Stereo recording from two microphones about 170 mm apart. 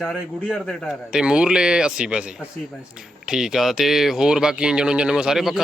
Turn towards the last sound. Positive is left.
turn(degrees=0)  # may be behind; listen again after turning